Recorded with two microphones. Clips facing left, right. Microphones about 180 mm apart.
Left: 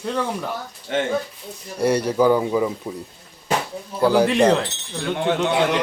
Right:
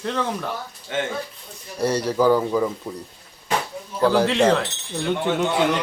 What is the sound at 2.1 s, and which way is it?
Speech, 15° left (ahead or behind).